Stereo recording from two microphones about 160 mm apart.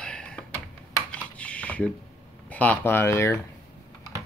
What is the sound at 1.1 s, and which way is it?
Typing, 10° left (ahead or behind).